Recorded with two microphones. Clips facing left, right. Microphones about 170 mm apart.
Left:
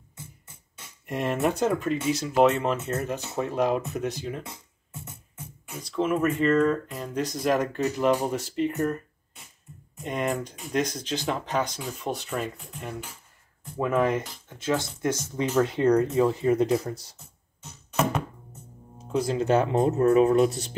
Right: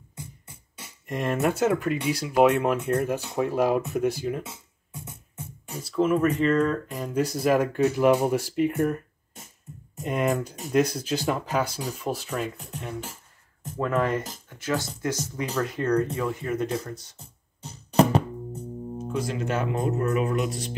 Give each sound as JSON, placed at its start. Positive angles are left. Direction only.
{"t": 0.1, "sound": "music", "side_deg": -10}
{"t": 1.0, "sound": "speech", "side_deg": 0}
{"t": 2.8, "sound": "speech", "side_deg": 5}
{"t": 13.7, "sound": "speech", "side_deg": 10}
{"t": 17.2, "sound": "music", "side_deg": -35}
{"t": 19.1, "sound": "speech", "side_deg": 30}